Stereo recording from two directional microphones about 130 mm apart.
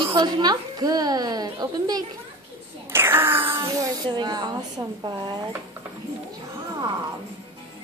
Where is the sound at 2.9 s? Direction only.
15° right (ahead or behind).